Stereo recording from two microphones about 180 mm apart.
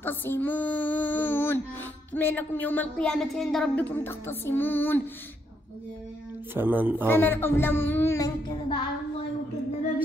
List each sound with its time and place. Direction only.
0.0 s child singing: 10° left (ahead or behind)
6.5 s speech: 10° right (ahead or behind)
7.1 s speech: 10° left (ahead or behind)
8.5 s a sound: 30° left (ahead or behind)